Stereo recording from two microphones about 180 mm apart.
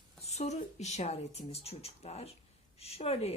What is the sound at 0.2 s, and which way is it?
A woman's voice, 40° left (ahead or behind).